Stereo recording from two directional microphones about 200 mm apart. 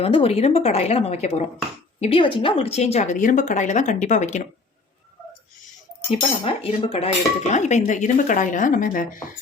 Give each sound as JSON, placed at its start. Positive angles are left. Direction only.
{"t": 0.0, "sound": "cutlery", "side_deg": 30}
{"t": 6.1, "sound": "cutlery", "side_deg": 30}